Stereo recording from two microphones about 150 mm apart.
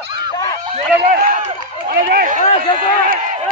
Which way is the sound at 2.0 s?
75° right (ahead or behind).